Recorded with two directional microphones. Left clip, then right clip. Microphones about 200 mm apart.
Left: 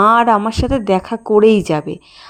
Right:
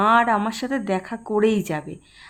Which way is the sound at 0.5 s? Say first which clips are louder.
Left 9 dB; 25° left (ahead or behind).